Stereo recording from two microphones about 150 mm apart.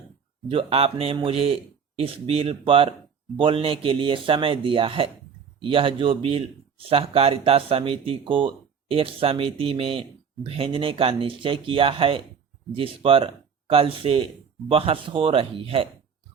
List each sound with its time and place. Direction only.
0.5 s speech: 40° right (ahead or behind)